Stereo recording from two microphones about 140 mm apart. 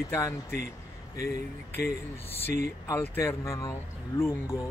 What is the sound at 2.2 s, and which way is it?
Speech, 15° left (ahead or behind).